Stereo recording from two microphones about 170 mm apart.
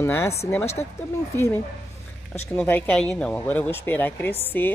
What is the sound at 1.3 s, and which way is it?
Speech, 15° left (ahead or behind).